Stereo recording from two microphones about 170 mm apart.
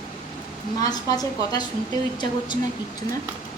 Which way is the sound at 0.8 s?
20° left (ahead or behind).